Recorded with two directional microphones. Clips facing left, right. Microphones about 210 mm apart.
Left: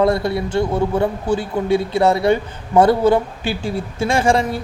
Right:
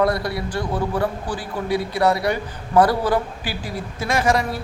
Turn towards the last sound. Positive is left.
turn(degrees=30)  # may be behind; listen again after turning